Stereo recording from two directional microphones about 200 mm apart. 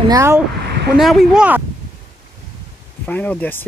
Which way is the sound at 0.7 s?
55° right (ahead or behind).